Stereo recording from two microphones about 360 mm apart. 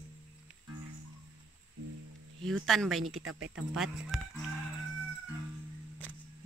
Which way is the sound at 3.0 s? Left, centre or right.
Right.